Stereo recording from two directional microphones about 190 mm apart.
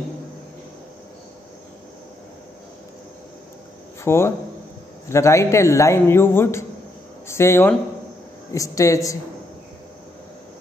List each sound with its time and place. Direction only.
4.0 s a man's voice: 15° left (ahead or behind)